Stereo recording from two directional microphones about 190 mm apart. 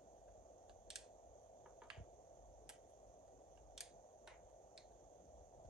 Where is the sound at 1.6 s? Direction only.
5° right (ahead or behind).